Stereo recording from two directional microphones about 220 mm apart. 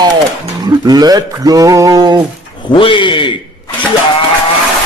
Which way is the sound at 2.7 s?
20° left (ahead or behind).